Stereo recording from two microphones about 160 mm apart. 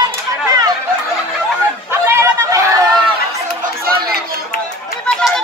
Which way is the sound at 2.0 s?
15° right (ahead or behind).